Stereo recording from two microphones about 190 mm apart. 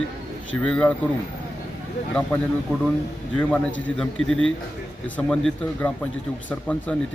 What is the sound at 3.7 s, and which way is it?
Speech, 75° left (ahead or behind).